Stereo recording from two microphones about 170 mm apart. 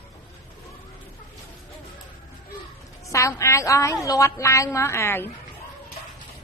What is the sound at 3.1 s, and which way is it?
A woman's voice, 20° left (ahead or behind).